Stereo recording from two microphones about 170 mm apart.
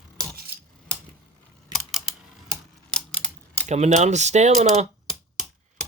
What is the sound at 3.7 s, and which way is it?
Speech, 40° right (ahead or behind).